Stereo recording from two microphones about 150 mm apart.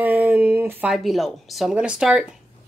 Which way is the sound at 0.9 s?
Centre (ahead or behind).